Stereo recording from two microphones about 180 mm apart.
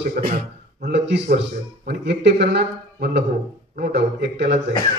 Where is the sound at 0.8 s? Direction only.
75° right (ahead or behind).